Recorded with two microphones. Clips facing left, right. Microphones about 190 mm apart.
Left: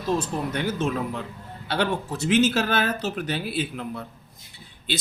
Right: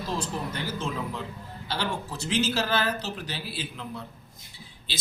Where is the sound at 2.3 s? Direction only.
55° left (ahead or behind).